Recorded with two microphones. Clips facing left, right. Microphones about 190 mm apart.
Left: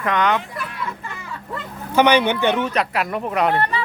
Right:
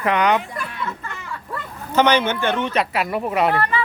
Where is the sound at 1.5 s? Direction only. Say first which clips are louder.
Left 2 dB; 15° left (ahead or behind).